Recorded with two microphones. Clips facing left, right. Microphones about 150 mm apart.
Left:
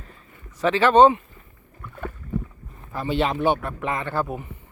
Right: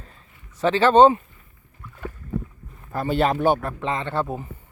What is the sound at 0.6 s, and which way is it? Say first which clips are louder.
Speech: right 1 dB; 30° right (ahead or behind).